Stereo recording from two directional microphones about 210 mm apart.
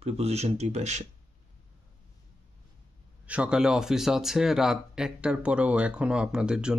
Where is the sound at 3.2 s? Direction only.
5° right (ahead or behind).